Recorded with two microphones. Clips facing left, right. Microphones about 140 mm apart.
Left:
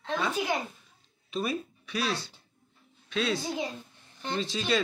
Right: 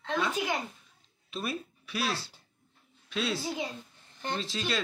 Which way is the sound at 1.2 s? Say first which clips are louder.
Left 4 dB; centre (ahead or behind).